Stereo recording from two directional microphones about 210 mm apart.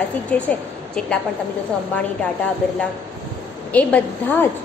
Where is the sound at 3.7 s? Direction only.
5° left (ahead or behind).